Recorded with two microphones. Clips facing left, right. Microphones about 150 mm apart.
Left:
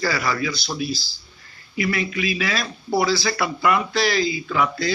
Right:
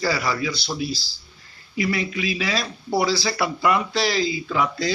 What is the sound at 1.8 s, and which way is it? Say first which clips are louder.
Speech: even; 30° right (ahead or behind).